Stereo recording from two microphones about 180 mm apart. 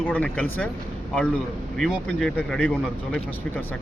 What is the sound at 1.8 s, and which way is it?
Speech, centre (ahead or behind).